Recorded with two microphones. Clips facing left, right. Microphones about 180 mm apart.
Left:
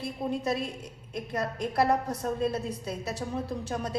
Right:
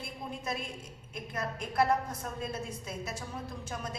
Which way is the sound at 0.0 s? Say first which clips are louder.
Left 9 dB; 35° left (ahead or behind).